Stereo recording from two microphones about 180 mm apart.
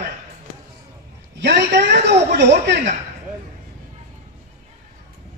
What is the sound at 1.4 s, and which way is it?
A man's voice, 65° right (ahead or behind).